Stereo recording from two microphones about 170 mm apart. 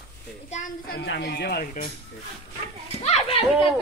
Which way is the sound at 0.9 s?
80° left.